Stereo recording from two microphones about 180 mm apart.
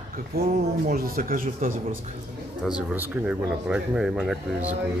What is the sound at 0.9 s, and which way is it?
Speech, 55° right (ahead or behind).